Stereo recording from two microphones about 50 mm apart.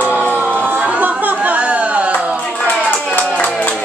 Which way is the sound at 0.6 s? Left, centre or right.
Right.